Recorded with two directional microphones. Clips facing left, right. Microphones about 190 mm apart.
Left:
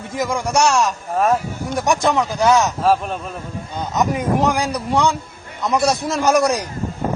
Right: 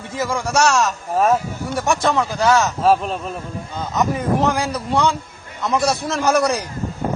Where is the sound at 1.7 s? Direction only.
20° left (ahead or behind).